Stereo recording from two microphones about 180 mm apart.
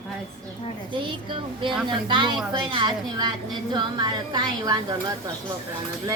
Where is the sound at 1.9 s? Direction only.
25° right (ahead or behind).